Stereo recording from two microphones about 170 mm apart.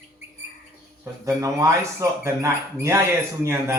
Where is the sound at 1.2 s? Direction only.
20° right (ahead or behind).